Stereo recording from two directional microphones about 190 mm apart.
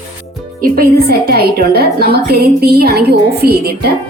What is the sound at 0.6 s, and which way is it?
A woman's voice, 50° right (ahead or behind).